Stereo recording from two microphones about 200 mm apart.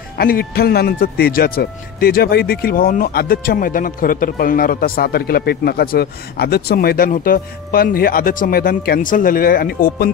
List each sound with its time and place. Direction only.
0.2 s speech: 50° left (ahead or behind)